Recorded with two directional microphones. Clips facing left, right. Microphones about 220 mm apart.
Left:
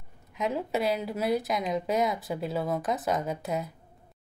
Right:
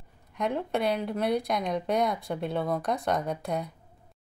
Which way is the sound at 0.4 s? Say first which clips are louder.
Even; 5° left (ahead or behind).